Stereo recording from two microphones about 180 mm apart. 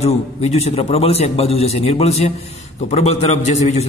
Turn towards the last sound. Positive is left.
turn(degrees=35)  # may be behind; listen again after turning